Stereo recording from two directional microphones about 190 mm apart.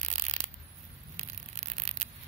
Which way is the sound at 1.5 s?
40° right (ahead or behind).